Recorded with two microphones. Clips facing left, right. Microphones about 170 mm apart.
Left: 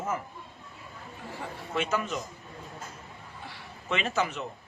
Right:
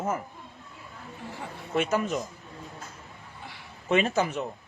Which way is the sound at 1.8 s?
45° right (ahead or behind).